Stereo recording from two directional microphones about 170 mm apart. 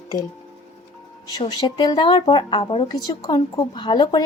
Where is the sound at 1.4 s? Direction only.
25° left (ahead or behind).